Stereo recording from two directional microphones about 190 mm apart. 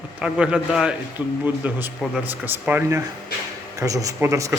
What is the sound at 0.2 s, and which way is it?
A man's voice, 5° right (ahead or behind).